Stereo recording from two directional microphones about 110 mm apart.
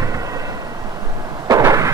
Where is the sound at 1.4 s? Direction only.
35° right (ahead or behind).